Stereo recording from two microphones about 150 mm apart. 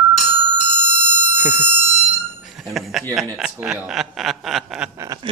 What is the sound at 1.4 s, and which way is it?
Alarm, 10° right (ahead or behind).